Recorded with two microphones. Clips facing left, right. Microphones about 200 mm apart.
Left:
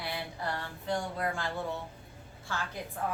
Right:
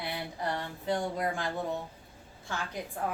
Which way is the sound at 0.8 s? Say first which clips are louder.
Right 2 dB; 15° right (ahead or behind).